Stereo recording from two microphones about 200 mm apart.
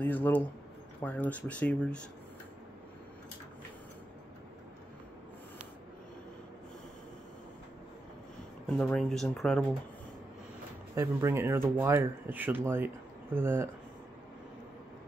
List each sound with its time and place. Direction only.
0.0 s speech: 10° left (ahead or behind)
8.6 s speech: 5° left (ahead or behind)
11.0 s speech: 15° right (ahead or behind)